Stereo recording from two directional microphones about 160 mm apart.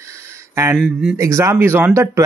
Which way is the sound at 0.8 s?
5° right (ahead or behind).